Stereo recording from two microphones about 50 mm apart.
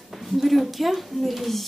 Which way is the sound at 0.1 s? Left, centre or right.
Centre.